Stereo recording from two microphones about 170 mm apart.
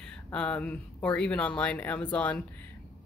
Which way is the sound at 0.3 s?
5° left (ahead or behind).